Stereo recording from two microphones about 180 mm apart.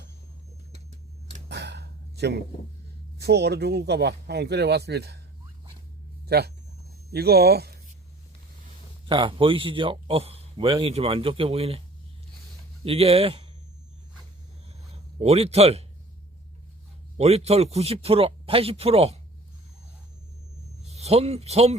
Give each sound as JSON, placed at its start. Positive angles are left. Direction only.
{"t": 1.5, "sound": "a sound", "side_deg": -70}
{"t": 3.2, "sound": "speech", "side_deg": -65}
{"t": 6.2, "sound": "speech", "side_deg": -60}
{"t": 9.0, "sound": "a man's voice", "side_deg": -30}
{"t": 12.8, "sound": "speech", "side_deg": -35}
{"t": 14.9, "sound": "speech", "side_deg": -35}
{"t": 17.2, "sound": "speech", "side_deg": -35}
{"t": 20.9, "sound": "speech", "side_deg": -35}